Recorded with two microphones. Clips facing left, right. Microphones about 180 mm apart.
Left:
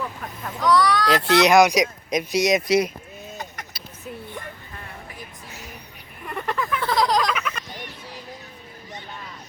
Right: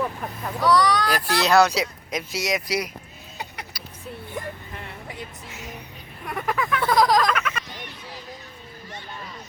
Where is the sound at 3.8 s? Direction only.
25° left (ahead or behind).